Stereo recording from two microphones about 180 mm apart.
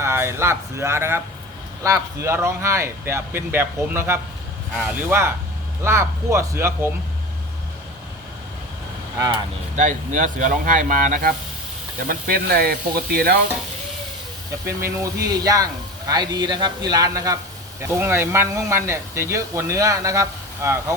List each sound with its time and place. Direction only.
0.0 s speech: 15° right (ahead or behind)
9.1 s speech: 25° right (ahead or behind)
9.7 s speech: 45° right (ahead or behind)
14.8 s speech: 20° right (ahead or behind)